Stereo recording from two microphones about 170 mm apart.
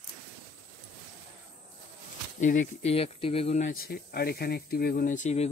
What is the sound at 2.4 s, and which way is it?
Speech, 45° left (ahead or behind).